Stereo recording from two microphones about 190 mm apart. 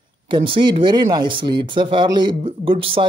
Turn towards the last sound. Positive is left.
turn(degrees=-30)  # may be behind; listen again after turning